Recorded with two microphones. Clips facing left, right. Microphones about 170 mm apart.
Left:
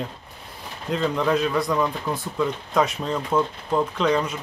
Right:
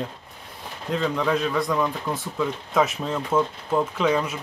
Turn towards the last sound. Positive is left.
turn(degrees=-5)  # may be behind; listen again after turning